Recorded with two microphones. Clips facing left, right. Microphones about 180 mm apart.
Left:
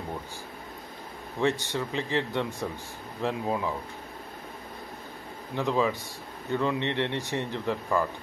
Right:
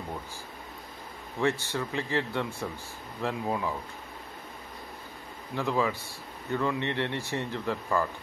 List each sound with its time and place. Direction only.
1.4 s speech: 15° left (ahead or behind)
5.5 s speech: 20° left (ahead or behind)